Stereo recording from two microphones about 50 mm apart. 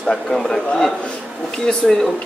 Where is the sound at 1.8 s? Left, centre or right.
Centre.